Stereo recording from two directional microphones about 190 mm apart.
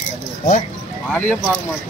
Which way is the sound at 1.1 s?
5° left (ahead or behind).